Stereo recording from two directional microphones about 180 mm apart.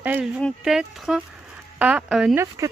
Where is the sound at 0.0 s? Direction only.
10° right (ahead or behind).